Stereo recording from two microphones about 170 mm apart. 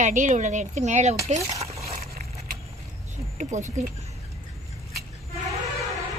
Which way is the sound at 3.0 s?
45° right (ahead or behind).